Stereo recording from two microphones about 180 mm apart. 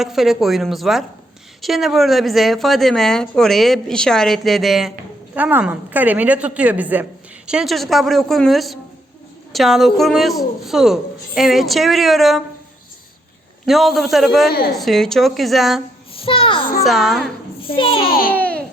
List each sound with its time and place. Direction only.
0.0 s a woman's voice: centre (ahead or behind)
13.7 s speech: centre (ahead or behind)
16.1 s child singing: 30° left (ahead or behind)
16.8 s speech: centre (ahead or behind)
17.7 s a child's voice: 30° left (ahead or behind)
18.1 s speech: 55° left (ahead or behind)
18.3 s babbling: 10° left (ahead or behind)